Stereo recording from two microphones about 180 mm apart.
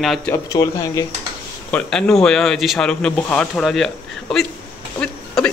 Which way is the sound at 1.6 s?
5° left (ahead or behind).